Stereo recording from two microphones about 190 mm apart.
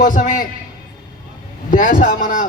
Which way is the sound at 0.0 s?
45° left (ahead or behind).